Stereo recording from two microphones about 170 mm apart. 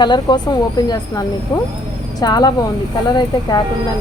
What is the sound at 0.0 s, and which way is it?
Speech, 25° left (ahead or behind).